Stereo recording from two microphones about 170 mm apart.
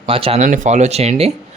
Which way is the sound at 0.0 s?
35° right (ahead or behind).